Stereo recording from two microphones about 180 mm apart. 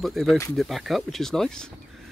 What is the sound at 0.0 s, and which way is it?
Speech, centre (ahead or behind).